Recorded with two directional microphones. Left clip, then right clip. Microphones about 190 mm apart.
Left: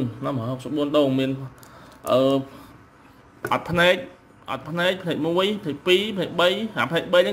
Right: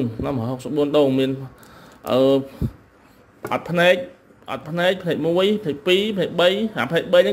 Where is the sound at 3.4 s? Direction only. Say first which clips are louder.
Right 1 dB; centre (ahead or behind).